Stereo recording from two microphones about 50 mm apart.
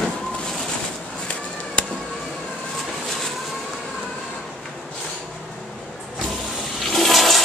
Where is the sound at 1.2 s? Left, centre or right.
Left.